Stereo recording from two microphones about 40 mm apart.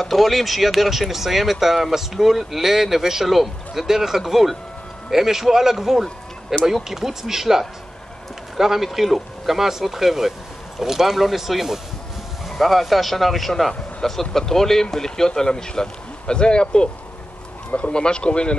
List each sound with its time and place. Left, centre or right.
0.0 s speech: centre; by 18.6 s left